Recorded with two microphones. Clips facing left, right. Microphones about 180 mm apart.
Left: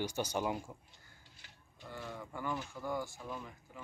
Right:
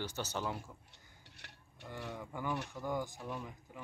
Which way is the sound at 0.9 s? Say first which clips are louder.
Right 1 dB; 70° right (ahead or behind).